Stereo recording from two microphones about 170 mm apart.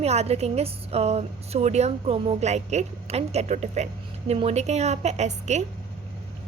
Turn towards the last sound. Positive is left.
turn(degrees=-45)  # may be behind; listen again after turning